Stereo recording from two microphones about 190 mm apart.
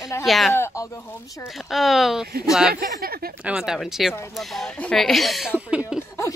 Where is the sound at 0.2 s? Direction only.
Centre (ahead or behind).